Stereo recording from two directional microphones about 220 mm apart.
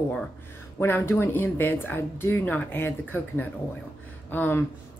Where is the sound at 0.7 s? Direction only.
10° left (ahead or behind).